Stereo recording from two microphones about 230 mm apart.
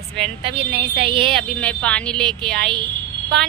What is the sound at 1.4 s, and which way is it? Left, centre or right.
A woman's voice, centre.